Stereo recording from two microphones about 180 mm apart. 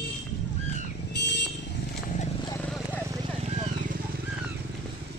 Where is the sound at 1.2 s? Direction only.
75° left (ahead or behind).